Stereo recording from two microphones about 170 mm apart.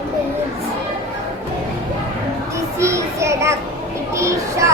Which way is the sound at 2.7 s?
15° right (ahead or behind).